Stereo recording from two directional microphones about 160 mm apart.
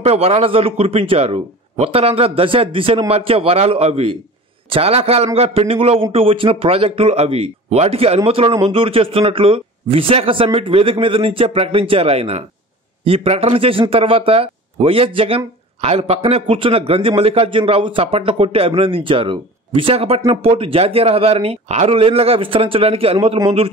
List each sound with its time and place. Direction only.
0.0 s a man's voice: 40° right (ahead or behind)